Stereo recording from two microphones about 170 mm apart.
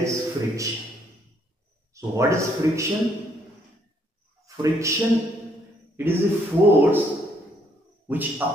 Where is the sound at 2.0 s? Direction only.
15° right (ahead or behind).